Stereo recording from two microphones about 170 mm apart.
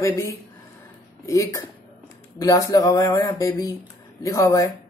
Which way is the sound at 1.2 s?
20° left (ahead or behind).